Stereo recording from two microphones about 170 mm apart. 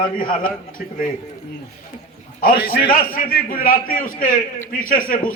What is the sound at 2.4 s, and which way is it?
A man's voice, 60° left (ahead or behind).